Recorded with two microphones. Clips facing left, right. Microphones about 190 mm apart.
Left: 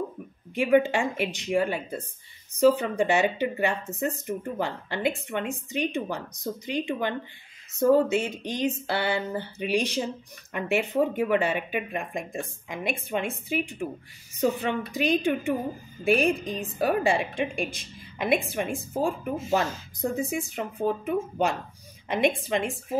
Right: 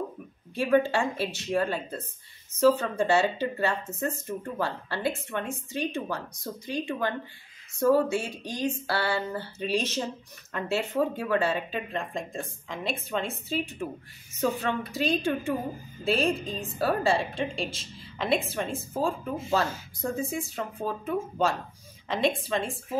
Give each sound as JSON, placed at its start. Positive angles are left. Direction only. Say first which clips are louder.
{"t": 0.6, "sound": "a woman's voice", "louder": "left 2 dB", "side_deg": 15}
{"t": 7.8, "sound": "a sound", "louder": "left 2 dB", "side_deg": 20}
{"t": 10.5, "sound": "a woman's voice", "louder": "left 3 dB", "side_deg": 15}